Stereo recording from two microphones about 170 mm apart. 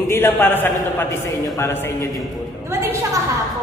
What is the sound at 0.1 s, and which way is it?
Speech, 15° left (ahead or behind).